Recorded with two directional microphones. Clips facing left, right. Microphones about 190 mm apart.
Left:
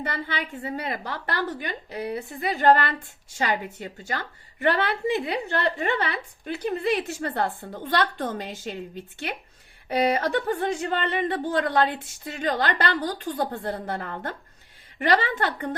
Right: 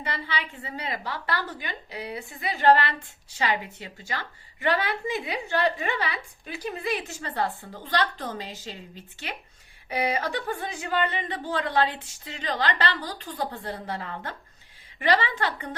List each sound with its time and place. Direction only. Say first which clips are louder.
0.0 s a woman's voice: left 2 dB; 50° left (ahead or behind)
10.7 s a woman's voice: left 2 dB; 60° left (ahead or behind)